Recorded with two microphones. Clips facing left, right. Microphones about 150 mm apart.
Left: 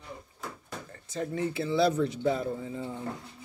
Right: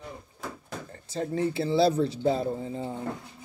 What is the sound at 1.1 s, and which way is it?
A man's voice, 30° right (ahead or behind).